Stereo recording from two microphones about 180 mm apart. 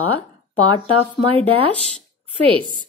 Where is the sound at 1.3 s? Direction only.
30° right (ahead or behind).